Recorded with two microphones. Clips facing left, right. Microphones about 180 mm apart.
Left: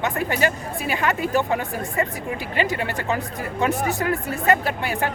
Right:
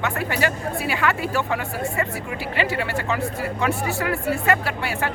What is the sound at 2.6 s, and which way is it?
A woman's voice, 20° left (ahead or behind).